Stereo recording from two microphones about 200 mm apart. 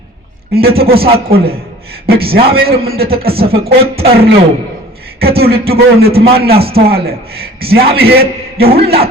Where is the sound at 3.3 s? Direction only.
30° right (ahead or behind).